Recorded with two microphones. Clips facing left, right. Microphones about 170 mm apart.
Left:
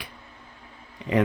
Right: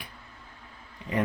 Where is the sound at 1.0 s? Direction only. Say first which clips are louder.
Left 7 dB; 75° left (ahead or behind).